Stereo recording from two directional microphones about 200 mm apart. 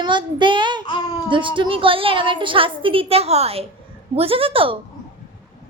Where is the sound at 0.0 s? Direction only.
25° right (ahead or behind).